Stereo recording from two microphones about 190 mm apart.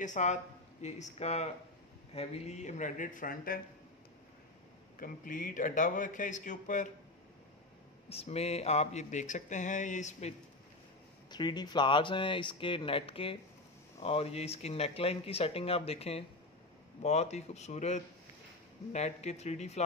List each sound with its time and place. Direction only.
0.0 s speech: 40° left (ahead or behind)
4.9 s speech: 45° left (ahead or behind)
8.1 s speech: 30° left (ahead or behind)
11.2 s speech: 20° left (ahead or behind)